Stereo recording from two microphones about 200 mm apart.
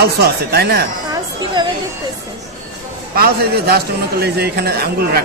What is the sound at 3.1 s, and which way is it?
A man's voice, 50° right (ahead or behind).